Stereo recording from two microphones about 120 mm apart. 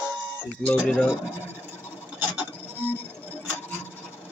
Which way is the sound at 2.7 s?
15° left (ahead or behind).